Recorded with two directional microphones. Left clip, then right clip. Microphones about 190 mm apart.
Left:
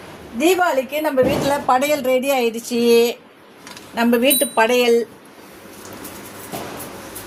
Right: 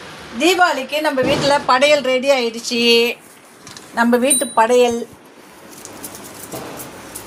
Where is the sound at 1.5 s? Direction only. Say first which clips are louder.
Right 4 dB; 40° left (ahead or behind).